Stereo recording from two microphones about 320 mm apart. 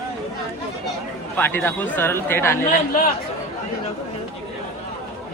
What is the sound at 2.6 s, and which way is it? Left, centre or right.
Speech, left.